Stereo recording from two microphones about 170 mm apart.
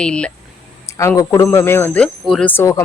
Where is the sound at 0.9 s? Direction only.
15° left (ahead or behind).